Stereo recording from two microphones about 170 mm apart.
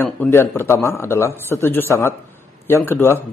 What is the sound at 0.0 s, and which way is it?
A man's voice, 15° left (ahead or behind).